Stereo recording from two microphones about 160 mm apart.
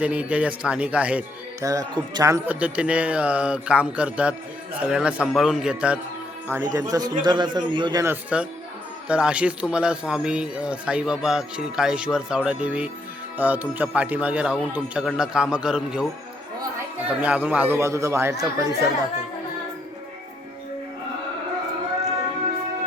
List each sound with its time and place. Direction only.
0.0 s speech: 10° right (ahead or behind)
1.6 s speech: 20° right (ahead or behind)
2.5 s speech: 10° right (ahead or behind)
6.5 s speech: 20° right (ahead or behind)
8.0 s a man's voice: 10° right (ahead or behind)
17.1 s speech: 10° right (ahead or behind)